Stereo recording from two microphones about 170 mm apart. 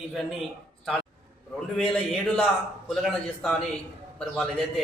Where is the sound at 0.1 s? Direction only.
Centre (ahead or behind).